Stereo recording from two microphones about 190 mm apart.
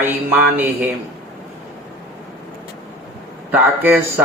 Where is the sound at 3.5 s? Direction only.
10° right (ahead or behind).